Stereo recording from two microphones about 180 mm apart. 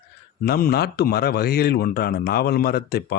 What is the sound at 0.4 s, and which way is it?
Speech, 55° left (ahead or behind).